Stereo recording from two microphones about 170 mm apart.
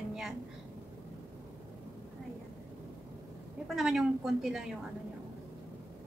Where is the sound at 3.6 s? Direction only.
Centre (ahead or behind).